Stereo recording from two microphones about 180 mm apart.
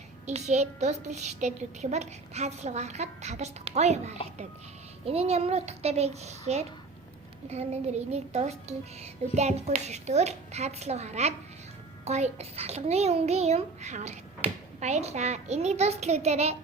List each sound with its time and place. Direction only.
0.3 s a child's voice: 40° right (ahead or behind)